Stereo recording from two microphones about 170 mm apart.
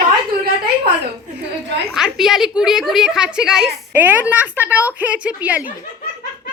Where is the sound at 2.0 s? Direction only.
Centre (ahead or behind).